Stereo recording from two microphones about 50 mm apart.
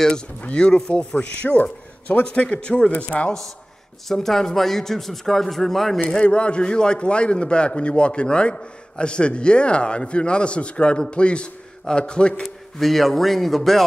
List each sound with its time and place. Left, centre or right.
0.4 s a man's voice: left
4.1 s a man's voice: centre
6.2 s a man's voice: left
12.4 s a man's voice: centre